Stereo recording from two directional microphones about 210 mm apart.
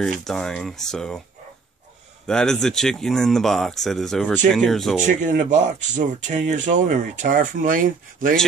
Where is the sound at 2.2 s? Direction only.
5° left (ahead or behind).